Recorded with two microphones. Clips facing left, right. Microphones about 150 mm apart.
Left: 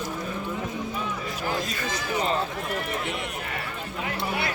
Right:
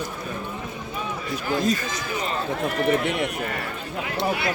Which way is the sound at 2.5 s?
60° right (ahead or behind).